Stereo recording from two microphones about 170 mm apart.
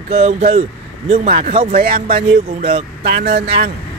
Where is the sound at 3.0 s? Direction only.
70° right (ahead or behind).